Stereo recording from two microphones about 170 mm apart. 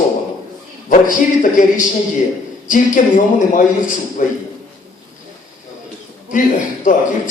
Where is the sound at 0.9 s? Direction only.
50° left (ahead or behind).